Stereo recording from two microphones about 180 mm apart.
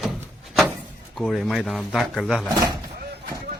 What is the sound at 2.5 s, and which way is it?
Speech, 20° right (ahead or behind).